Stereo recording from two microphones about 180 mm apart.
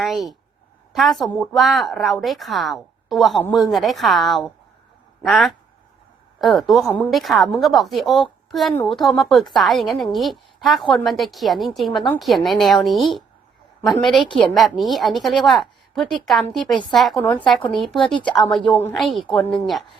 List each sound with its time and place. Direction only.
0.0 s a woman's voice: centre (ahead or behind)